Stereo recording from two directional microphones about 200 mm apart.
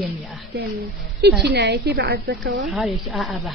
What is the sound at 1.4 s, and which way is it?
Speech, 55° right (ahead or behind).